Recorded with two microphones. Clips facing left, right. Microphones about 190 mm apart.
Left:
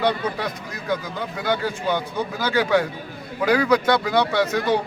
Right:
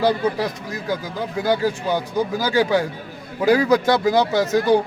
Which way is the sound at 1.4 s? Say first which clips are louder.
Right 5 dB; 35° right (ahead or behind).